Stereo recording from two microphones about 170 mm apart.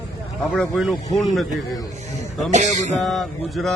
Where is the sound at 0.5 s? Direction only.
5° left (ahead or behind).